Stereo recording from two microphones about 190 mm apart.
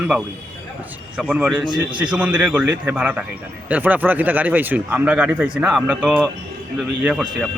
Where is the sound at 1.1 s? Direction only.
5° right (ahead or behind).